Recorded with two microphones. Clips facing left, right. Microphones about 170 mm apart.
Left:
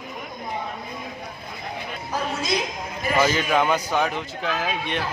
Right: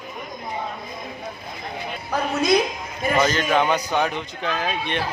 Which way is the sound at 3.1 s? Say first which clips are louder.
Right 1 dB; 10° left (ahead or behind).